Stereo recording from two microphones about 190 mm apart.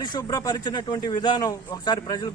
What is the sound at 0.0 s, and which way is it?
Speech, 20° left (ahead or behind).